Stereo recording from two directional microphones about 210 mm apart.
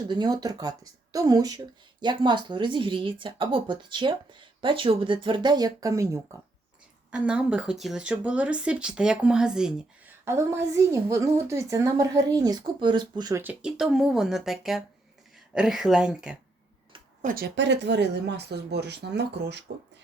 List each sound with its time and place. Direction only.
0.1 s a woman's voice: 20° right (ahead or behind)
13.4 s speech: 5° right (ahead or behind)
17.2 s speech: 45° right (ahead or behind)